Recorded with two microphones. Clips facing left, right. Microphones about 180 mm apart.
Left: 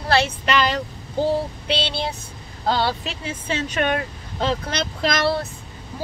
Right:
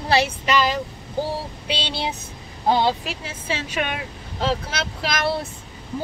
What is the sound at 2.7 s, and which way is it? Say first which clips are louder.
Speech: right 2 dB; 15° right (ahead or behind).